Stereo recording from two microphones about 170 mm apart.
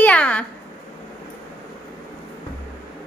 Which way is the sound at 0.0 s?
10° left (ahead or behind).